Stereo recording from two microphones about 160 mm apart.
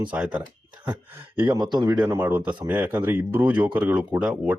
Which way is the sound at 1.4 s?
25° right (ahead or behind).